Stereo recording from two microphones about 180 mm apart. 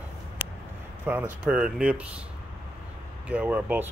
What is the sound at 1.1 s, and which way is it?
Speech, 10° right (ahead or behind).